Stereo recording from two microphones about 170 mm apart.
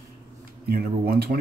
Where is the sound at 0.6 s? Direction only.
60° right (ahead or behind).